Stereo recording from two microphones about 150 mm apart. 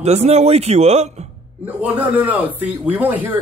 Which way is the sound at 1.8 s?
10° right (ahead or behind).